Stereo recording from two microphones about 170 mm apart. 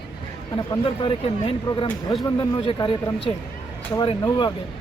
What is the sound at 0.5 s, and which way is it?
Speech, 30° left (ahead or behind).